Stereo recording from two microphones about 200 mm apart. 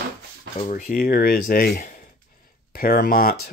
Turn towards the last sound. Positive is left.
turn(degrees=50)  # may be behind; listen again after turning